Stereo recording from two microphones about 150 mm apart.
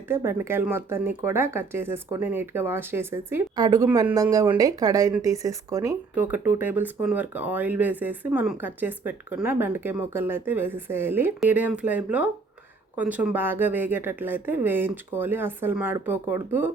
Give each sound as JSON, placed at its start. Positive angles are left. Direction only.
{"t": 0.1, "sound": "speech", "side_deg": -15}
{"t": 3.5, "sound": "speech", "side_deg": -25}
{"t": 6.1, "sound": "speech", "side_deg": -10}